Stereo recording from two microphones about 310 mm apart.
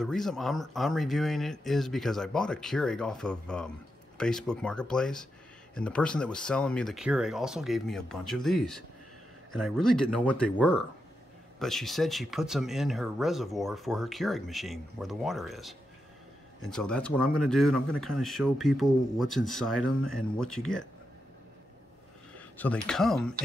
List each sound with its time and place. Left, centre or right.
0.0 s speech: centre
16.7 s speech: centre
22.6 s speech: centre